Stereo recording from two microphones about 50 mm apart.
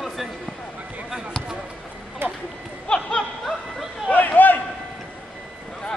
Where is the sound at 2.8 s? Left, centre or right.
Centre.